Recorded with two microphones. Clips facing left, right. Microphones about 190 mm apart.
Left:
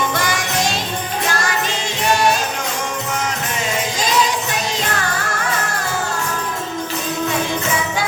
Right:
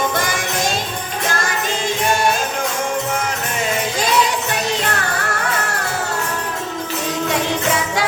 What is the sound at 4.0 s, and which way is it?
Music, 60° right (ahead or behind).